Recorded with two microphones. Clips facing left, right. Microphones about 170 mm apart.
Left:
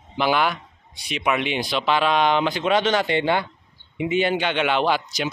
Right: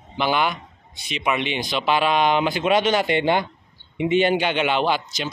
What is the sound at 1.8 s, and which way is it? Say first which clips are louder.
Speech: right 1 dB; 5° right (ahead or behind).